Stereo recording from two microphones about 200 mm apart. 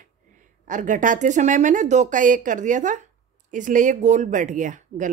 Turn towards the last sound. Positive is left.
turn(degrees=-40)  # may be behind; listen again after turning